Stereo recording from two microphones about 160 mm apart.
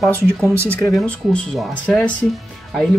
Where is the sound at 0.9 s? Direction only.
5° left (ahead or behind).